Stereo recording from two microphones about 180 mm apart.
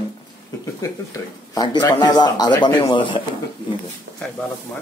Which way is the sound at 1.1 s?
20° left (ahead or behind).